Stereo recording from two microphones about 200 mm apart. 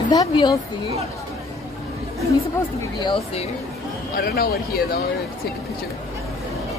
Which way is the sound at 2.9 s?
25° left (ahead or behind).